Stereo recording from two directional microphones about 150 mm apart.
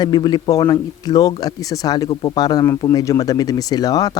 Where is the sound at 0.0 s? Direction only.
30° left (ahead or behind).